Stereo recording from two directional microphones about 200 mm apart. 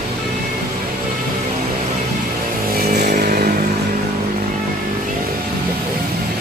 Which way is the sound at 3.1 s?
45° right (ahead or behind).